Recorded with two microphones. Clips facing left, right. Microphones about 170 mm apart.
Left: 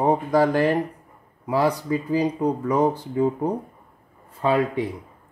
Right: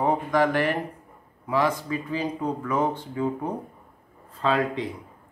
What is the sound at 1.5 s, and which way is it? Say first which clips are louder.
Speech: left 3 dB; 35° left (ahead or behind).